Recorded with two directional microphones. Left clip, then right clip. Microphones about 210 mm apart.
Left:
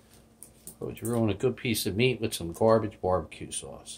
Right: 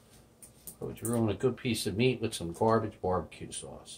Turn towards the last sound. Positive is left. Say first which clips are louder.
# left 2 dB
turn(degrees=45)  # may be behind; listen again after turning